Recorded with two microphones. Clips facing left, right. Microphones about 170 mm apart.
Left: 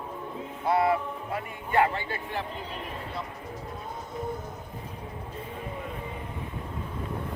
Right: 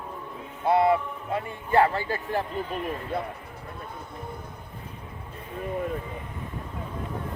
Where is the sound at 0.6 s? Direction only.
25° right (ahead or behind); by 3.2 s 45° right (ahead or behind).